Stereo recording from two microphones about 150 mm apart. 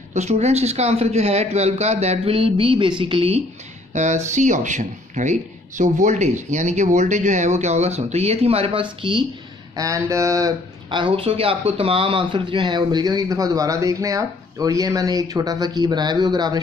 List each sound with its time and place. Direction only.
0.1 s a man's voice: 50° right (ahead or behind)
3.9 s a man's voice: 50° right (ahead or behind); by 9.2 s 30° right (ahead or behind)
9.8 s speech: 20° right (ahead or behind)